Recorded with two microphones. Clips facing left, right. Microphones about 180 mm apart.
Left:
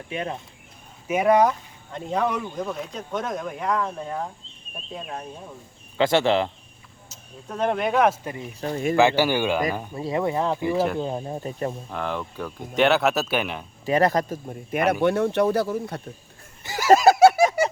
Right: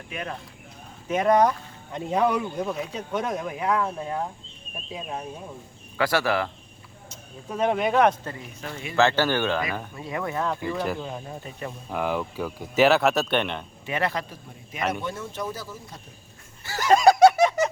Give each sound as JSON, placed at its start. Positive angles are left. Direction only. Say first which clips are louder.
{"t": 0.1, "sound": "speech", "louder": "left 4 dB", "side_deg": 25}
{"t": 1.0, "sound": "speech", "louder": "left 1 dB", "side_deg": 10}
{"t": 1.9, "sound": "speech", "louder": "right 2 dB", "side_deg": -10}
{"t": 6.0, "sound": "speech", "louder": "left 4 dB", "side_deg": 25}
{"t": 7.1, "sound": "speech", "louder": "right 1 dB", "side_deg": 0}
{"t": 8.6, "sound": "speech", "louder": "left 12 dB", "side_deg": 40}
{"t": 9.0, "sound": "speech", "louder": "left 1 dB", "side_deg": 15}
{"t": 9.9, "sound": "speech", "louder": "left 6 dB", "side_deg": 30}
{"t": 11.0, "sound": "speech", "louder": "left 6 dB", "side_deg": 30}
{"t": 11.9, "sound": "speech", "louder": "right 2 dB", "side_deg": -10}
{"t": 13.8, "sound": "speech", "louder": "left 8 dB", "side_deg": 40}
{"t": 15.0, "sound": "speech", "louder": "left 12 dB", "side_deg": 65}
{"t": 16.6, "sound": "a sound", "louder": "left 2 dB", "side_deg": 10}